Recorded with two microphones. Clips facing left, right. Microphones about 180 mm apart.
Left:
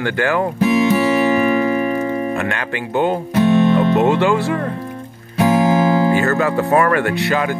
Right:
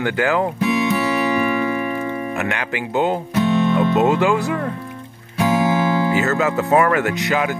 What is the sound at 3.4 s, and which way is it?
Music, 45° left (ahead or behind).